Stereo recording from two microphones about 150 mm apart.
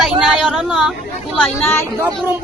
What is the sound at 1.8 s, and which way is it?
Speech, 20° right (ahead or behind).